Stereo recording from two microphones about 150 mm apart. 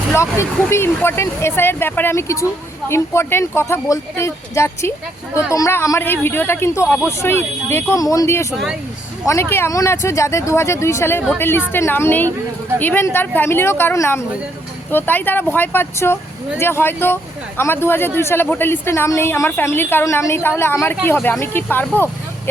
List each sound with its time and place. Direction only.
0.1 s a woman's voice: 20° left (ahead or behind)